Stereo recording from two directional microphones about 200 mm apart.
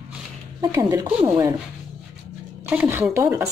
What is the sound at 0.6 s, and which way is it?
Speech, 15° right (ahead or behind).